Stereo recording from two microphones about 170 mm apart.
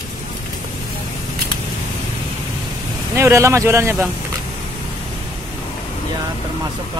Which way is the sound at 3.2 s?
15° right (ahead or behind).